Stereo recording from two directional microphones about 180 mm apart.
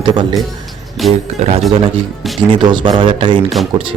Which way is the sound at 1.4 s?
35° right (ahead or behind).